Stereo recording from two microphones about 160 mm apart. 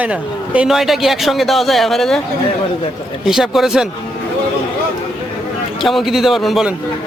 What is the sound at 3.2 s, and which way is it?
Speech, centre (ahead or behind).